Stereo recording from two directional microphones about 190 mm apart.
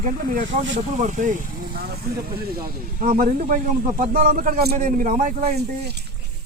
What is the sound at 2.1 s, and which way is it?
Speech, 50° right (ahead or behind).